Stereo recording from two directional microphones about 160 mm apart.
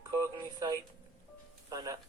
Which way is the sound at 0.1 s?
25° right (ahead or behind).